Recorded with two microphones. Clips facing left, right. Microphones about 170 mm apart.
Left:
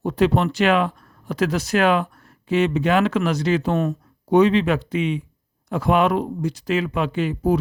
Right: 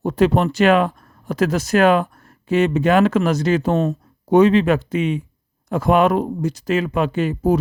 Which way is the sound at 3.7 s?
25° right (ahead or behind).